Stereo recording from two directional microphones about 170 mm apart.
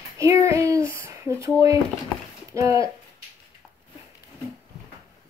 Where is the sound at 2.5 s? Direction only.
15° right (ahead or behind).